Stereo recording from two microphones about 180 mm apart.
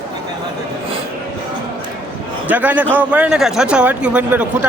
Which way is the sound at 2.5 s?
10° right (ahead or behind).